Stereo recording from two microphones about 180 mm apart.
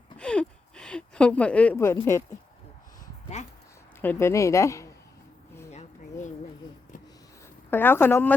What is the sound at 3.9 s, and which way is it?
Speech, 10° left (ahead or behind).